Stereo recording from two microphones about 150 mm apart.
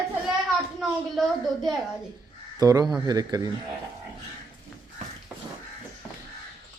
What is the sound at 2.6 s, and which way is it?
Speech, 25° right (ahead or behind).